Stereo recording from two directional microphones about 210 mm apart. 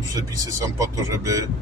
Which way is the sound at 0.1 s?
15° right (ahead or behind).